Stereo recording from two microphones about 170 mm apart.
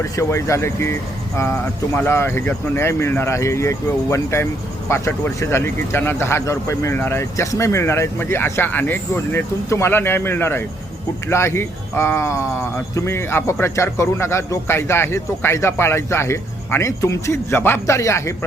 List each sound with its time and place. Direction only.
0.2 s speech: 15° left (ahead or behind)